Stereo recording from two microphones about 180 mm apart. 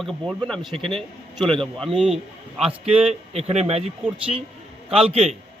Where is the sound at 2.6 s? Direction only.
35° right (ahead or behind).